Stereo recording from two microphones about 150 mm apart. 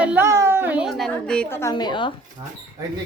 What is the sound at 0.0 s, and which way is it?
Speech, 10° right (ahead or behind).